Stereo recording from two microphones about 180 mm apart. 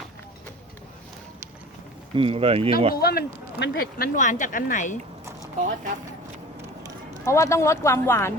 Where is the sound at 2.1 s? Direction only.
30° right (ahead or behind).